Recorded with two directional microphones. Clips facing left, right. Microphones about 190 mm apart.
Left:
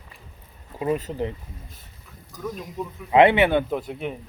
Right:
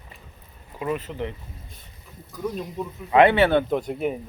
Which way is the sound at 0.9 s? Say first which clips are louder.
Left 3 dB; 40° left (ahead or behind).